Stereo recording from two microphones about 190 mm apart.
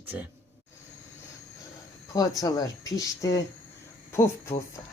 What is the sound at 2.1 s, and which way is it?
Speech, 20° left (ahead or behind).